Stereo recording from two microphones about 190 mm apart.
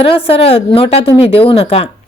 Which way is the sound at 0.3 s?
30° left (ahead or behind).